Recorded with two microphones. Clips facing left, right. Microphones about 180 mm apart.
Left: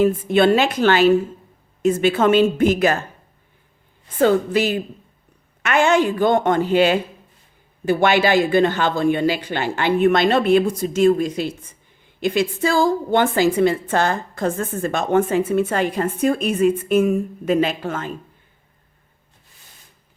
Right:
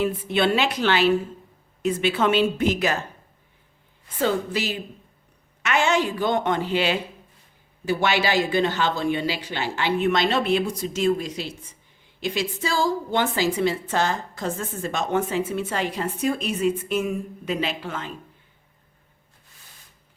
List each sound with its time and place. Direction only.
0.0 s a woman's voice: 45° left (ahead or behind)
4.2 s a woman's voice: 55° left (ahead or behind)